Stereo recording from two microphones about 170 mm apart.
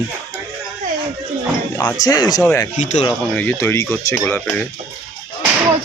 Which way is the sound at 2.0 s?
25° left (ahead or behind).